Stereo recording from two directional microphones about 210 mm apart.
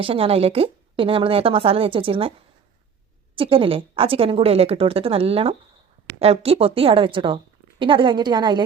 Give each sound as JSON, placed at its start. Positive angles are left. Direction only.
{"t": 0.0, "sound": "a woman's voice", "side_deg": -25}
{"t": 3.3, "sound": "a woman's voice", "side_deg": -25}